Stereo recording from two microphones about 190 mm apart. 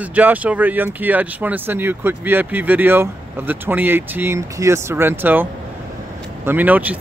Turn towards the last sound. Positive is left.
turn(degrees=-10)  # may be behind; listen again after turning